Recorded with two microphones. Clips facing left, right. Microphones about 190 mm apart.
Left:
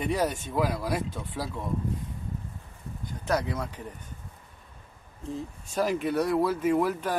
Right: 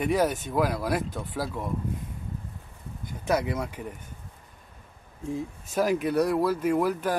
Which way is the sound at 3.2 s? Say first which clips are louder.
Right 2 dB; 10° right (ahead or behind).